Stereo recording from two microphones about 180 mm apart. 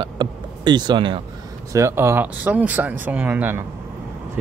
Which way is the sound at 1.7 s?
15° right (ahead or behind).